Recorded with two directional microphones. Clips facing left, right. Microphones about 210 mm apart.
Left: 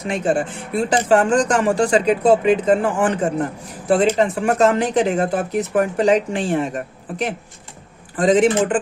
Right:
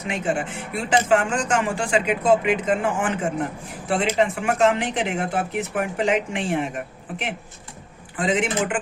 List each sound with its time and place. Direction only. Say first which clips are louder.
0.0 s speech: left 5 dB; 35° left (ahead or behind)